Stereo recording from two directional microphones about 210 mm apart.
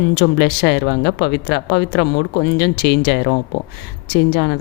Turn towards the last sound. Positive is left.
turn(degrees=50)  # may be behind; listen again after turning